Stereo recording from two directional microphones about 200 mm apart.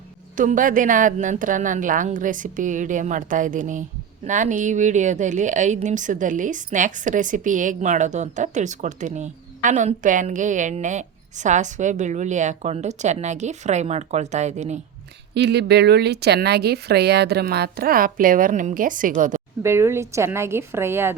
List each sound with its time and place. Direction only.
0.3 s a woman's voice: 40° right (ahead or behind)
15.4 s speech: 55° right (ahead or behind); by 19.4 s 40° right (ahead or behind)
19.6 s a woman's voice: 15° right (ahead or behind)